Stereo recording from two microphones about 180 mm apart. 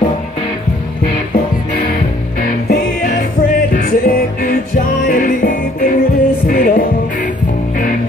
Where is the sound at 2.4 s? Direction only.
50° left (ahead or behind).